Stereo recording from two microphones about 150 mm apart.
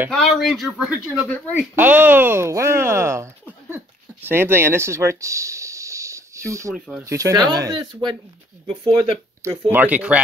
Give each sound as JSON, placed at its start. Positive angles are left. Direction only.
{"t": 0.1, "sound": "speech", "side_deg": 0}
{"t": 6.7, "sound": "speech", "side_deg": -5}
{"t": 7.1, "sound": "speech", "side_deg": -20}
{"t": 9.4, "sound": "speech", "side_deg": -20}